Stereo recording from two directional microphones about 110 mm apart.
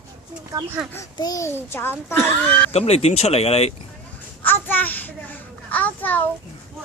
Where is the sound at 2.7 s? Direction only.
70° left (ahead or behind).